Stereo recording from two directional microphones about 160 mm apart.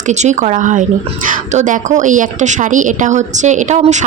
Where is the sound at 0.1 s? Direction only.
45° right (ahead or behind).